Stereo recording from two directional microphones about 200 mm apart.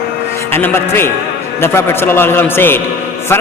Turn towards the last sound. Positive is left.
turn(degrees=10)  # may be behind; listen again after turning